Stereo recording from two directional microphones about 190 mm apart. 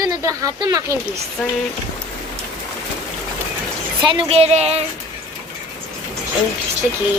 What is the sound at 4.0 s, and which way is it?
Speech, 25° right (ahead or behind).